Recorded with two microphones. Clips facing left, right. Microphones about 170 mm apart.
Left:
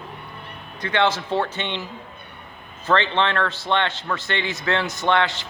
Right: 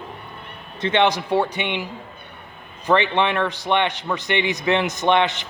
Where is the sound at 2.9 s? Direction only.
15° right (ahead or behind).